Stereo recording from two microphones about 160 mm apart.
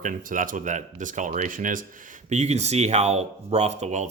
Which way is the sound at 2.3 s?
45° right (ahead or behind).